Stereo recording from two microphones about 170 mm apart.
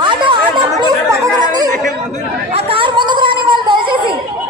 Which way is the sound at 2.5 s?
35° right (ahead or behind).